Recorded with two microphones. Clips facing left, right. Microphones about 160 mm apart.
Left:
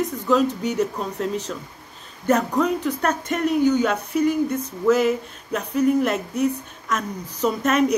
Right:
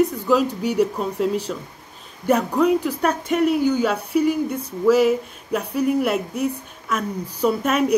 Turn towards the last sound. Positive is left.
turn(degrees=-10)  # may be behind; listen again after turning